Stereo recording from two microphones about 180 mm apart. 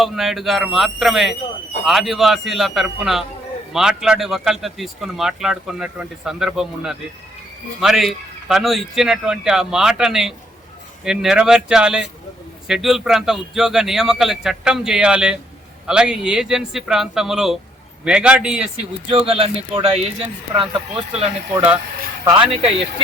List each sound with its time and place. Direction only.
0.0 s speech: centre (ahead or behind)
19.3 s speech: 35° right (ahead or behind)